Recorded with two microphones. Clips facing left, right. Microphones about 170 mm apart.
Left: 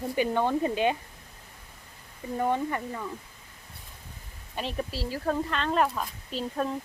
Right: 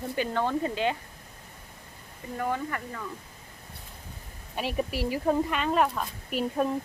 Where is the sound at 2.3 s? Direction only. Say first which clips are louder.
Left 3 dB; 20° left (ahead or behind).